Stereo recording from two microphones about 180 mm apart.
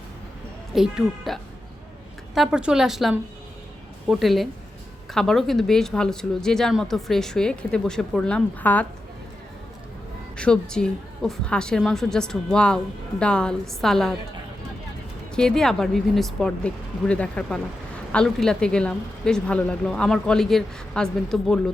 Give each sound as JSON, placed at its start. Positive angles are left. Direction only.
{"t": 0.7, "sound": "a woman's voice", "side_deg": 0}
{"t": 10.3, "sound": "a woman's voice", "side_deg": 5}
{"t": 15.4, "sound": "a woman's voice", "side_deg": 5}